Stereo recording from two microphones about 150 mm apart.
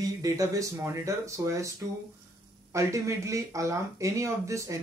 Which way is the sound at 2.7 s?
20° right (ahead or behind).